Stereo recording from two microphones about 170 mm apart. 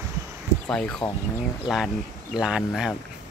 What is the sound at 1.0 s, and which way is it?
Speech, 30° left (ahead or behind).